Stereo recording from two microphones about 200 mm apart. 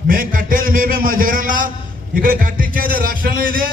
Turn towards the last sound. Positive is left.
turn(degrees=-45)  # may be behind; listen again after turning